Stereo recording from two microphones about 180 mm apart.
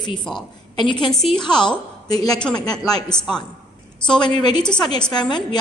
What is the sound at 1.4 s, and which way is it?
A woman's voice, 25° left (ahead or behind).